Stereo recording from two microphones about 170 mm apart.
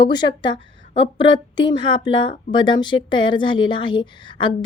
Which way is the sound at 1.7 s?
25° left (ahead or behind).